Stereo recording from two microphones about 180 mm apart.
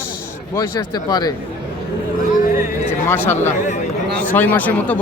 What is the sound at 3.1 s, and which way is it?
Speech, 15° left (ahead or behind).